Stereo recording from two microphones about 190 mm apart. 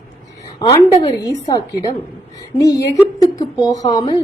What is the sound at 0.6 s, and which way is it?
Speech, 25° left (ahead or behind).